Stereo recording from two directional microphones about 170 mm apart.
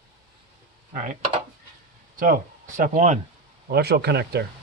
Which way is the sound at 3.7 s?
70° right (ahead or behind).